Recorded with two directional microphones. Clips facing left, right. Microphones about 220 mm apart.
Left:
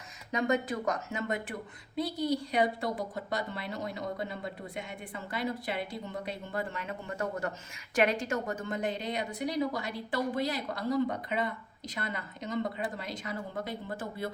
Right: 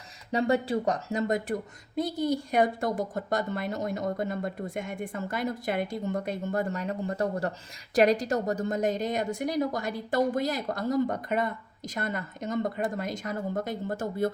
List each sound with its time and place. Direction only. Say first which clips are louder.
0.3 s a woman's voice: right 4 dB; 30° right (ahead or behind)